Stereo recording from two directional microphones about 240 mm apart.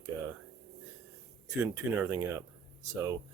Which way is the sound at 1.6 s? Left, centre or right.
Centre.